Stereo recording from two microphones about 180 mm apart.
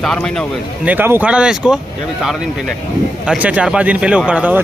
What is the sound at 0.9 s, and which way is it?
A man's voice, 10° right (ahead or behind).